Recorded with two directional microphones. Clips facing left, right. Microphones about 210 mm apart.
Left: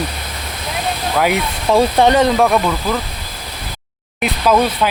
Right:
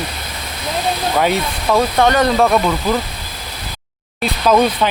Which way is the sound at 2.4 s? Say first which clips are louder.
Even; centre (ahead or behind).